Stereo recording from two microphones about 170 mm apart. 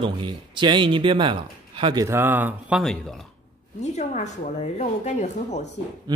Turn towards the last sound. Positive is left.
turn(degrees=45)  # may be behind; listen again after turning